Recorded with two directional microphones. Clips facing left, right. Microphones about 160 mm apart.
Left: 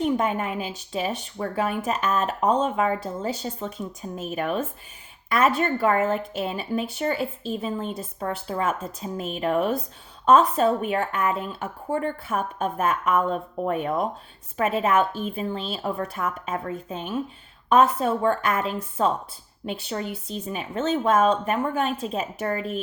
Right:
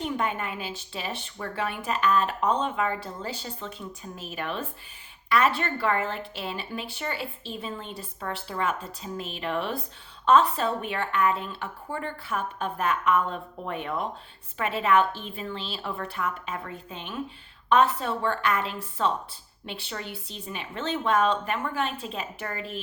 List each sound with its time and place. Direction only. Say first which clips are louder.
0.0 s a woman's voice: left 6 dB; 40° left (ahead or behind)